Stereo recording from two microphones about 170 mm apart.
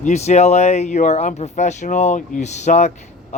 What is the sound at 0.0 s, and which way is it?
Speech, 40° left (ahead or behind).